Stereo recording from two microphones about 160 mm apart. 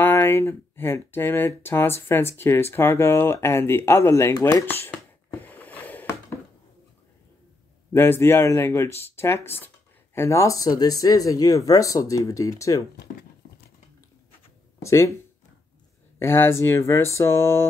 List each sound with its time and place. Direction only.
0.0 s speech: 15° left (ahead or behind)
5.4 s a sound: 10° left (ahead or behind)
7.9 s speech: 15° left (ahead or behind)
14.8 s speech: 20° left (ahead or behind)
16.2 s speech: 15° left (ahead or behind)